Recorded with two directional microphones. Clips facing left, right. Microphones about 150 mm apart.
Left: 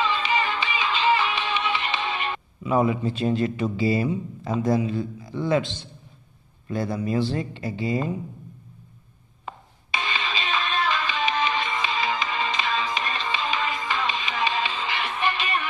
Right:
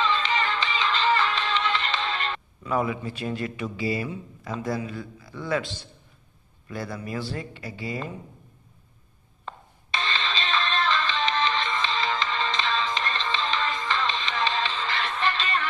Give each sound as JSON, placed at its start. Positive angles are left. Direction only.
{"t": 0.0, "sound": "music", "side_deg": 10}
{"t": 6.7, "sound": "speech", "side_deg": 25}
{"t": 9.5, "sound": "music", "side_deg": 10}